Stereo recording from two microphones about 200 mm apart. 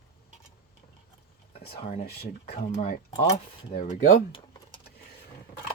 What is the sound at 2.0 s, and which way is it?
Speech, 50° left (ahead or behind).